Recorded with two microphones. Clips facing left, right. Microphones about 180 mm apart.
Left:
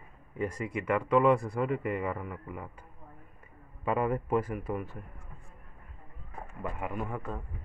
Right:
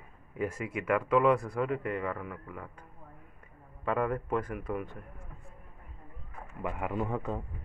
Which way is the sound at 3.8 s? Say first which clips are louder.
Left 1 dB; 5° left (ahead or behind).